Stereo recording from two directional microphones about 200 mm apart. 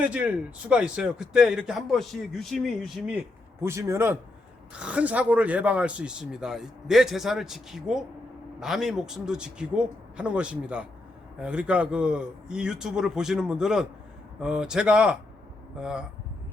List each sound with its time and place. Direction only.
0.0 s speech: 5° right (ahead or behind)
3.6 s a man's voice: 15° right (ahead or behind)